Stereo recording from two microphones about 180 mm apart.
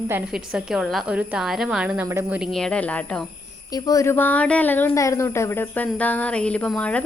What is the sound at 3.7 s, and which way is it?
Speech, 20° left (ahead or behind).